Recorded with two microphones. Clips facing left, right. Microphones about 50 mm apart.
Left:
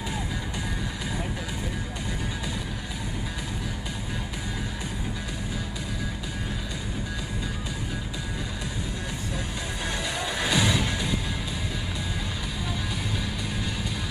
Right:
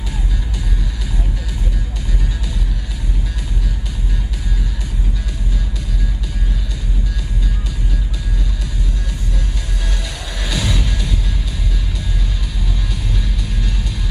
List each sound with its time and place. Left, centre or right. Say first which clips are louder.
9.8 s music: left 2 dB; centre